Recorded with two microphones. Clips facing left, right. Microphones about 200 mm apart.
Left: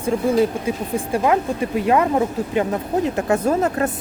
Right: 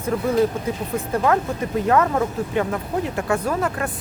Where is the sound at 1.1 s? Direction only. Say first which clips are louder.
Left 2 dB; 15° left (ahead or behind).